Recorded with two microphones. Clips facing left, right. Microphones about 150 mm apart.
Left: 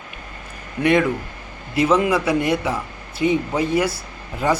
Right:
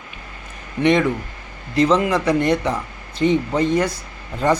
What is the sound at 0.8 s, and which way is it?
A man's voice, 5° left (ahead or behind).